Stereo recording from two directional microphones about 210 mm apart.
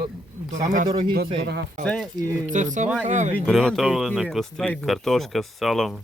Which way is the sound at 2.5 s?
35° right (ahead or behind).